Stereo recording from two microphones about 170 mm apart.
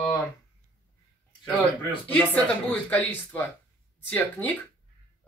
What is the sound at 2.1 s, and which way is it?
A man's voice, 10° left (ahead or behind).